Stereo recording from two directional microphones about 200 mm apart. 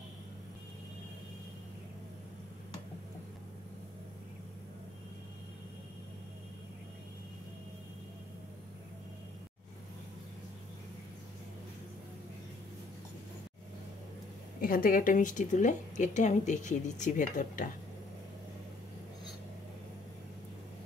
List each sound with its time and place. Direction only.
14.6 s a woman's voice: 45° left (ahead or behind)